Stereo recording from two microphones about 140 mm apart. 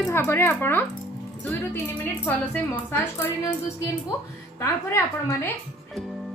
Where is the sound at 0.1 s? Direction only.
15° left (ahead or behind).